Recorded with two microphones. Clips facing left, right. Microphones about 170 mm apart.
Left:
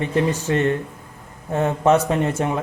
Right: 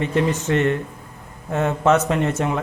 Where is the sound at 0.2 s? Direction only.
30° left (ahead or behind).